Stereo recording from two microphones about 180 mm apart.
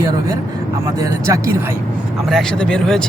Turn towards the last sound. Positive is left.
turn(degrees=5)  # may be behind; listen again after turning